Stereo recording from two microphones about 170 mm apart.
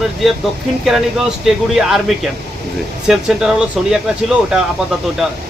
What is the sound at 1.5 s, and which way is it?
Speech, centre (ahead or behind).